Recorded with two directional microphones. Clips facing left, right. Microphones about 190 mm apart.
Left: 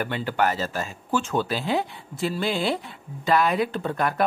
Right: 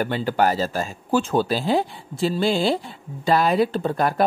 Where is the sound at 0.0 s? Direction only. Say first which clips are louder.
Right 4 dB; 35° right (ahead or behind).